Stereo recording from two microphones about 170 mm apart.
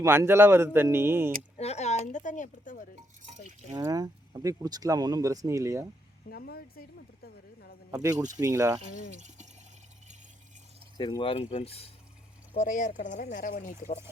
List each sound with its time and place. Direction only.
0.0 s speech: 15° right (ahead or behind)
1.5 s speech: 40° left (ahead or behind)
3.8 s speech: 20° right (ahead or behind)
6.3 s speech: 65° left (ahead or behind)
7.9 s speech: 15° right (ahead or behind)
10.9 s speech: 25° left (ahead or behind)
12.5 s speech: 50° left (ahead or behind)